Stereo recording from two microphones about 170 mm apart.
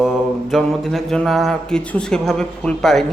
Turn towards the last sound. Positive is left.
turn(degrees=0)  # may be behind; listen again after turning